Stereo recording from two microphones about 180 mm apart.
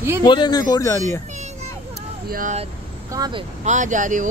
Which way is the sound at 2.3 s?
50° right (ahead or behind).